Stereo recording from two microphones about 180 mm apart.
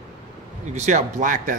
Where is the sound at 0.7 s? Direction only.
40° right (ahead or behind).